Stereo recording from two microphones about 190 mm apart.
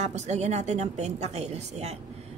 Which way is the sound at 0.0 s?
35° right (ahead or behind).